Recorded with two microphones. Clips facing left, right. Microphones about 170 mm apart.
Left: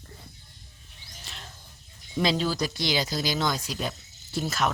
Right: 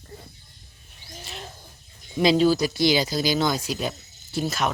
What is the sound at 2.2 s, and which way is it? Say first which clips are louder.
Speech: right 7 dB; 5° right (ahead or behind).